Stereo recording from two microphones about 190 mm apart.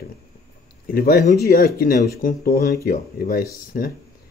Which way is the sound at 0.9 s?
50° left (ahead or behind).